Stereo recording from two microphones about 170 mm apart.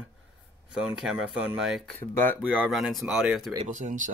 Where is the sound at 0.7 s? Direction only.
5° right (ahead or behind).